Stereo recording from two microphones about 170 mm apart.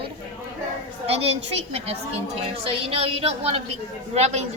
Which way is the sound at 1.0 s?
35° right (ahead or behind).